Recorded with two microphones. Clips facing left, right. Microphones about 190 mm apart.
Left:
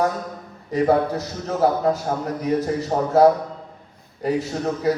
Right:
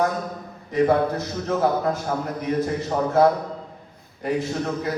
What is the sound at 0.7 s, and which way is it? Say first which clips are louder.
A man's voice: left 1 dB; 40° left (ahead or behind).